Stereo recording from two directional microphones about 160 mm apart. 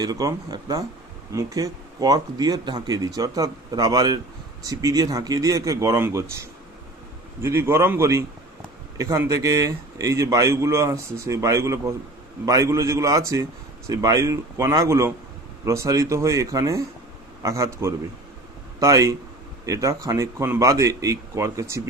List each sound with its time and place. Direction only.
0.0 s a man's voice: 20° right (ahead or behind)
7.4 s a man's voice: 15° right (ahead or behind)